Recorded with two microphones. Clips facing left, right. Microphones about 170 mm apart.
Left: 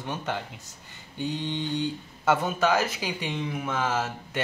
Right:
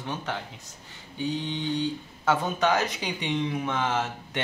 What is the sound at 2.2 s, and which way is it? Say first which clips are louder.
Speech: left 1 dB; 10° left (ahead or behind).